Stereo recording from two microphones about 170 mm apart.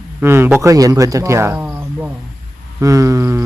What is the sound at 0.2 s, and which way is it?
Speech, 15° right (ahead or behind).